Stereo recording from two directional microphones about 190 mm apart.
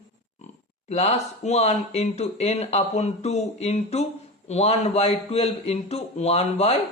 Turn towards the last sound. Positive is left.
turn(degrees=35)  # may be behind; listen again after turning